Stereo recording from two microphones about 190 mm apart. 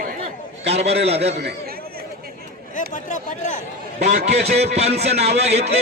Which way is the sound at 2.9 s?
40° left (ahead or behind).